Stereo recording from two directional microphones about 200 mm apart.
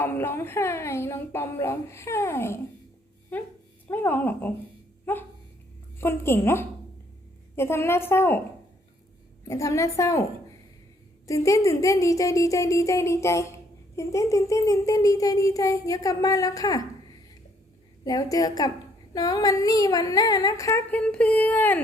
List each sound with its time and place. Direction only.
0.0 s a child's voice: 10° left (ahead or behind)
3.8 s a child's voice: 10° left (ahead or behind)
6.0 s a child's voice: 10° left (ahead or behind)
9.5 s a child's voice: 15° left (ahead or behind)
11.3 s a child's voice: 15° left (ahead or behind)
18.0 s a woman's voice: 20° left (ahead or behind)